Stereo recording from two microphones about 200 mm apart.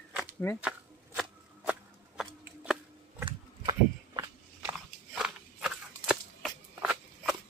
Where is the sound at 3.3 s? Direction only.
25° right (ahead or behind).